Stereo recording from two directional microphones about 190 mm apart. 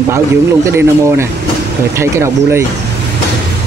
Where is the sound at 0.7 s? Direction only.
15° right (ahead or behind).